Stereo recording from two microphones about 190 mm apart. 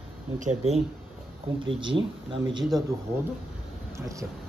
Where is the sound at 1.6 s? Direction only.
25° right (ahead or behind).